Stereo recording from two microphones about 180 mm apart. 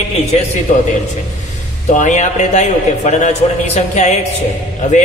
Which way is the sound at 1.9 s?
40° left (ahead or behind).